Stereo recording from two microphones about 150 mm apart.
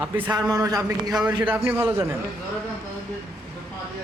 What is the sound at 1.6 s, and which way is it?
Speech, 15° right (ahead or behind).